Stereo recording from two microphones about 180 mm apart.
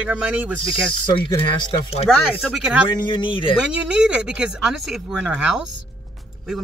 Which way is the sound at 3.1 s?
25° left (ahead or behind).